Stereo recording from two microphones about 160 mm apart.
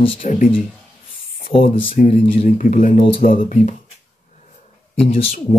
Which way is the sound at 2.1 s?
45° left (ahead or behind).